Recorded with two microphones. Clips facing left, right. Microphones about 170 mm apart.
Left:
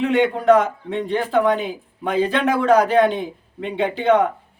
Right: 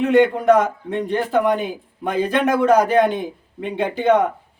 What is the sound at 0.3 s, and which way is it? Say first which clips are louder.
Speech: even; 15° right (ahead or behind).